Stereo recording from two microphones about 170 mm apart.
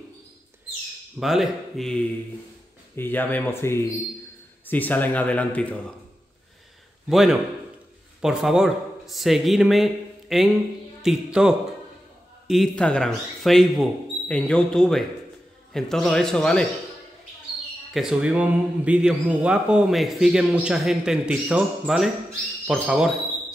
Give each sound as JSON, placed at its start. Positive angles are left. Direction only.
{"t": 1.2, "sound": "a man's voice", "side_deg": 0}
{"t": 7.1, "sound": "a man's voice", "side_deg": 0}
{"t": 12.4, "sound": "a man's voice", "side_deg": 0}
{"t": 17.9, "sound": "a man's voice", "side_deg": -5}